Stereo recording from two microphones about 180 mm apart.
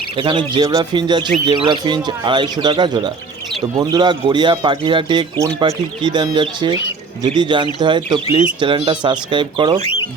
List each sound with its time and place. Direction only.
0.2 s speech: 25° right (ahead or behind)
9.8 s speech: 30° left (ahead or behind)